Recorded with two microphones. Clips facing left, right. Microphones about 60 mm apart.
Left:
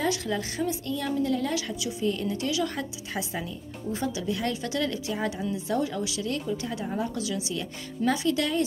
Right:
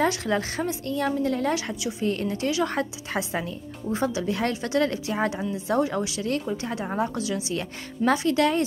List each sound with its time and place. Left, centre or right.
0.0 s a woman's voice: right
2.0 s a woman's voice: right